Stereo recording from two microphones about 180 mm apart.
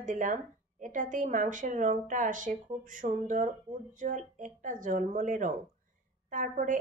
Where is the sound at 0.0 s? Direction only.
45° right (ahead or behind).